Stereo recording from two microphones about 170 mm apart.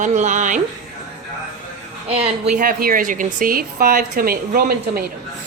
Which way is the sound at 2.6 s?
55° right (ahead or behind).